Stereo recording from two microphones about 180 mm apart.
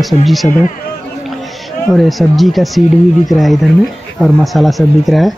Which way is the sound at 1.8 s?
Centre (ahead or behind).